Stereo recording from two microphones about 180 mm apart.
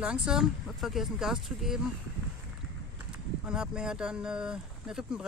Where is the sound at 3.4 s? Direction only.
5° right (ahead or behind).